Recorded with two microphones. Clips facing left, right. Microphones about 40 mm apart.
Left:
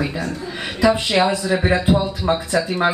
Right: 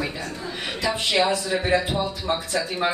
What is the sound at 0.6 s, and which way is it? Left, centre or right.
Speech, left.